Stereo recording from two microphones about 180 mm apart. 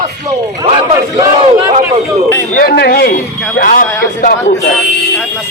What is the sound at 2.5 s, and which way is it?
Speech, 60° left (ahead or behind).